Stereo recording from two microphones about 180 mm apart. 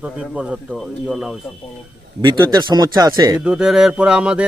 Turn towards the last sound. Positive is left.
turn(degrees=-5)  # may be behind; listen again after turning